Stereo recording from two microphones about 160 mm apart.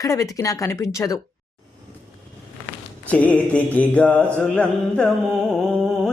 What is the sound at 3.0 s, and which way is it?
Mantra, 10° left (ahead or behind).